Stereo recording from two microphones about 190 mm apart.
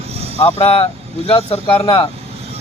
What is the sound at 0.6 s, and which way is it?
Speech, 30° left (ahead or behind).